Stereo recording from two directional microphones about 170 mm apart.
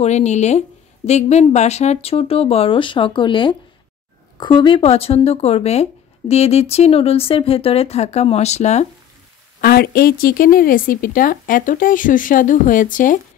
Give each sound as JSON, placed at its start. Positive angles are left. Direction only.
{"t": 0.0, "sound": "speech", "side_deg": 40}
{"t": 9.6, "sound": "a woman's voice", "side_deg": 65}